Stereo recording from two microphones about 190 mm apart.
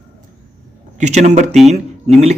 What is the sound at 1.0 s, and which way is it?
Speech, 35° right (ahead or behind).